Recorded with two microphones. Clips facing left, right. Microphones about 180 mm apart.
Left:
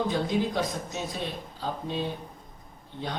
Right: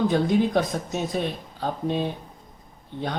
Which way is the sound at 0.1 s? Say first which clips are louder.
Right 6 dB; 55° right (ahead or behind).